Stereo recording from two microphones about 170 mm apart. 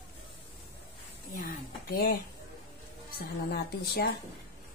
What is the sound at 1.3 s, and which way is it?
Speech, 60° left (ahead or behind).